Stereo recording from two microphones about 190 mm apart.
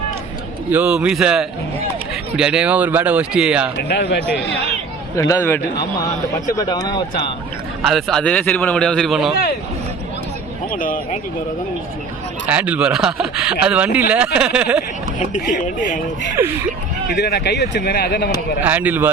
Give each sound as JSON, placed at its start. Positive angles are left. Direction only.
{"t": 0.7, "sound": "a man's voice", "side_deg": -5}
{"t": 3.8, "sound": "speech", "side_deg": 60}
{"t": 5.1, "sound": "a man's voice", "side_deg": 15}
{"t": 7.8, "sound": "a man's voice", "side_deg": 0}
{"t": 10.7, "sound": "speech", "side_deg": 45}
{"t": 12.5, "sound": "a man's voice", "side_deg": -10}
{"t": 15.2, "sound": "speech", "side_deg": 40}
{"t": 16.4, "sound": "speech", "side_deg": -10}
{"t": 17.2, "sound": "speech", "side_deg": 60}
{"t": 18.6, "sound": "speech", "side_deg": -10}